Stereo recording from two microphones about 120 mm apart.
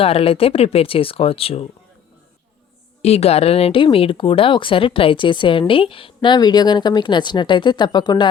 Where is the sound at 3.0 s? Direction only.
60° left (ahead or behind).